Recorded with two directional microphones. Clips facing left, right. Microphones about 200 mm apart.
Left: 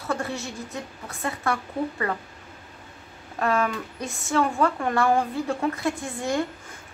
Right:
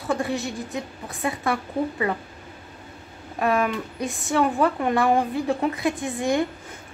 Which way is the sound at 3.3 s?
15° right (ahead or behind).